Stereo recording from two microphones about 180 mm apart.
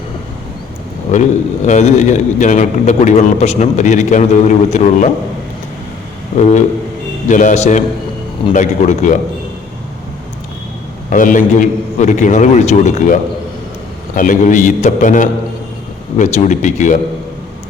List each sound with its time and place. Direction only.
1.1 s a man's voice: 40° left (ahead or behind)
7.3 s a man's voice: 45° left (ahead or behind)
11.1 s a man's voice: 45° left (ahead or behind)
14.2 s a man's voice: 45° left (ahead or behind)